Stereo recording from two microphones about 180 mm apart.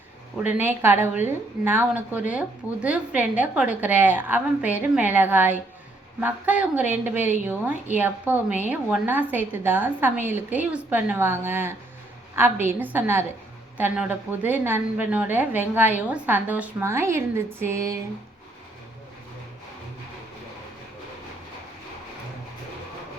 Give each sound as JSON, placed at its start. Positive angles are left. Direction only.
{"t": 0.5, "sound": "a woman's voice", "side_deg": -10}